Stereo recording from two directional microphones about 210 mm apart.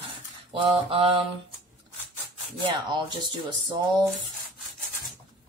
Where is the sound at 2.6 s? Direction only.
20° right (ahead or behind).